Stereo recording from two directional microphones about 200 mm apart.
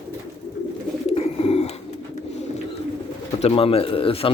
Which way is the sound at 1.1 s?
30° left (ahead or behind).